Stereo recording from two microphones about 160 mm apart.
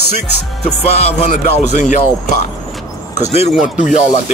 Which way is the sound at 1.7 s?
50° left (ahead or behind).